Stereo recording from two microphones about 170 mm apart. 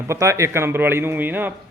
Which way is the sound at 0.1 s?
15° right (ahead or behind).